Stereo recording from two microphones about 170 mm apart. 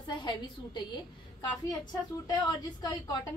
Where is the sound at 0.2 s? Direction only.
25° left (ahead or behind).